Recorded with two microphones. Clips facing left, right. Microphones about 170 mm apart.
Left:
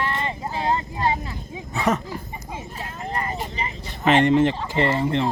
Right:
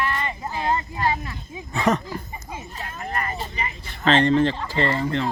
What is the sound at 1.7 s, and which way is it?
Speech, 5° left (ahead or behind).